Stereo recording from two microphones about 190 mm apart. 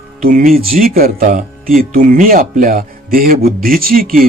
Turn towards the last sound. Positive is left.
turn(degrees=-50)  # may be behind; listen again after turning